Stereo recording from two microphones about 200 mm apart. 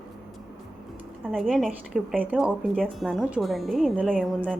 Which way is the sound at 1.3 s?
Centre (ahead or behind).